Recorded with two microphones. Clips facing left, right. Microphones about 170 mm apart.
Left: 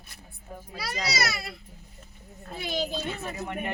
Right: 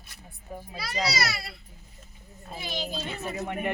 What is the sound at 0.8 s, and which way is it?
Speech, 45° left (ahead or behind).